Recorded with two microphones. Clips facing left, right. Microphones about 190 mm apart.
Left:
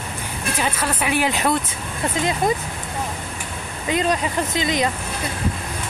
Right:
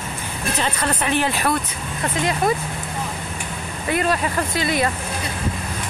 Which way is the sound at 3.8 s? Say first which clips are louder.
Even; 20° left (ahead or behind).